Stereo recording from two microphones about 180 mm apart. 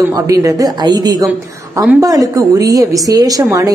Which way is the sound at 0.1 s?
20° right (ahead or behind).